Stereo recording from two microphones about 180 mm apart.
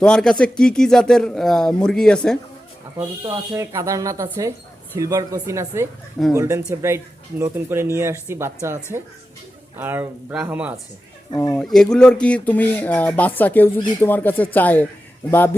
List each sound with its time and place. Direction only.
0.0 s speech: 5° left (ahead or behind)
3.0 s speech: 15° right (ahead or behind)
11.3 s speech: 15° left (ahead or behind)
11.6 s speech: centre (ahead or behind)